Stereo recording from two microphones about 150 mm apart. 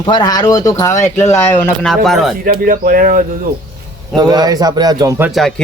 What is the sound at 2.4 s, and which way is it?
Speech, 70° right (ahead or behind).